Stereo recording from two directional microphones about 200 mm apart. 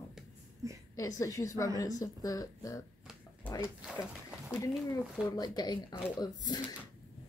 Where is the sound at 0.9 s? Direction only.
15° left (ahead or behind).